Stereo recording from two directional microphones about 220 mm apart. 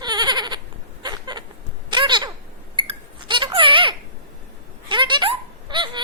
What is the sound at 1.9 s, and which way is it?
Cat, 20° right (ahead or behind).